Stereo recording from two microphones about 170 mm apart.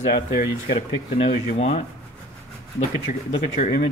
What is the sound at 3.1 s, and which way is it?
Speech, 50° left (ahead or behind).